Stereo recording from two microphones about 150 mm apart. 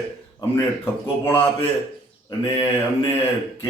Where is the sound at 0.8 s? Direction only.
15° left (ahead or behind).